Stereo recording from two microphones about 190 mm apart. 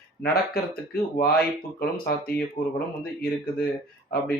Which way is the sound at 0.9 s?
55° left (ahead or behind).